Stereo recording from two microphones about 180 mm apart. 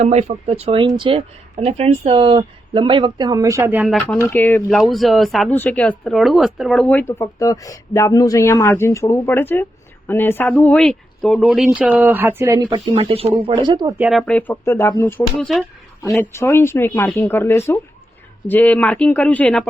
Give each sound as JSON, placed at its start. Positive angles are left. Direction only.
{"t": 0.0, "sound": "speech", "side_deg": -40}
{"t": 4.3, "sound": "speech", "side_deg": 10}
{"t": 14.0, "sound": "speech", "side_deg": 0}
{"t": 15.4, "sound": "speech", "side_deg": 0}
{"t": 16.0, "sound": "speech", "side_deg": 15}